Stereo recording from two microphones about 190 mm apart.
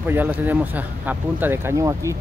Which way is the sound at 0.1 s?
10° right (ahead or behind).